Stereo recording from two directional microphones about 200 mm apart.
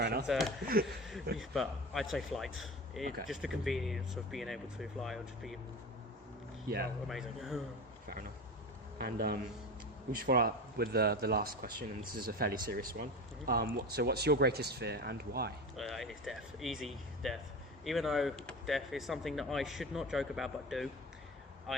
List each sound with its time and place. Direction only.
0.0 s a sound: 55° right (ahead or behind)
0.3 s speech: centre (ahead or behind)
7.1 s speech: centre (ahead or behind)
9.0 s speech: 50° right (ahead or behind)
15.7 s speech: centre (ahead or behind)